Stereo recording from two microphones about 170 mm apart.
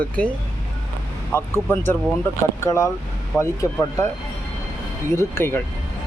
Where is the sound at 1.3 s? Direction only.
15° left (ahead or behind).